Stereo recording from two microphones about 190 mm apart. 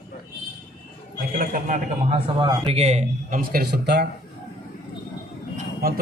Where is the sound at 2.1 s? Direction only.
25° right (ahead or behind); by 4.1 s 60° right (ahead or behind).